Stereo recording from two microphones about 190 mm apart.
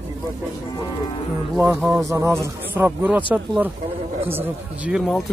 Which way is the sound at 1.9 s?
15° right (ahead or behind).